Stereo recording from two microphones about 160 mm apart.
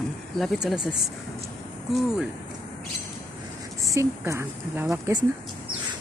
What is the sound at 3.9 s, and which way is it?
Speech, 20° right (ahead or behind).